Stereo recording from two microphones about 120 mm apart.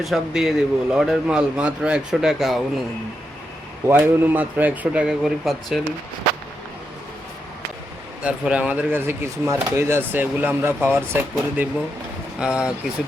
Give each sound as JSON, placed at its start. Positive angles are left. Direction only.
{"t": 0.0, "sound": "speech", "side_deg": 0}
{"t": 3.8, "sound": "speech", "side_deg": -15}
{"t": 8.2, "sound": "speech", "side_deg": -10}